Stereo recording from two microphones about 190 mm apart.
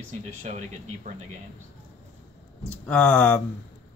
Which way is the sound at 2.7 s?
10° left (ahead or behind).